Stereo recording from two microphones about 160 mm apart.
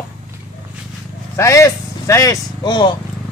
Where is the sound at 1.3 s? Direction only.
20° left (ahead or behind).